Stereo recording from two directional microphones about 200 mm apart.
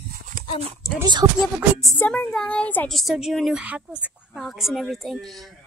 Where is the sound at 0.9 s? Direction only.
20° right (ahead or behind).